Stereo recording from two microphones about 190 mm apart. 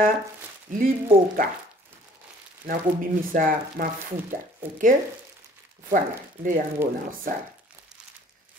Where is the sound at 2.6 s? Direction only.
45° right (ahead or behind).